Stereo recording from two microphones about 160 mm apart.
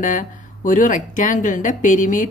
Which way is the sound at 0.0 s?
55° left (ahead or behind).